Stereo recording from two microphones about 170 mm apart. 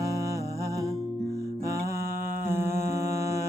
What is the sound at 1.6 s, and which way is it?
Mantra, 15° right (ahead or behind).